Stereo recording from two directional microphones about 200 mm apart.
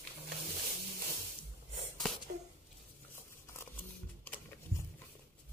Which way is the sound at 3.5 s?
10° left (ahead or behind).